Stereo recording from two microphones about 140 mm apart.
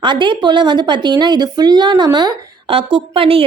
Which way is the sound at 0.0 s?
35° right (ahead or behind).